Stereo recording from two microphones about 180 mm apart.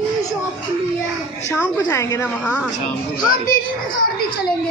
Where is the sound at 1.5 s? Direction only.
15° left (ahead or behind).